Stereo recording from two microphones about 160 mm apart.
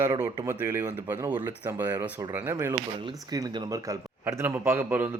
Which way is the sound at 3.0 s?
25° right (ahead or behind).